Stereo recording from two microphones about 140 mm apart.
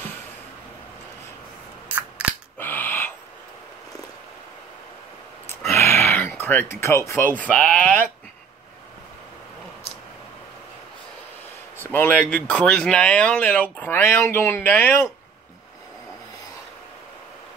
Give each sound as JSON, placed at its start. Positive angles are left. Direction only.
{"t": 1.9, "sound": "scissors", "side_deg": -10}
{"t": 2.6, "sound": "bird", "side_deg": 15}
{"t": 5.5, "sound": "speech", "side_deg": 15}
{"t": 11.8, "sound": "speech", "side_deg": 15}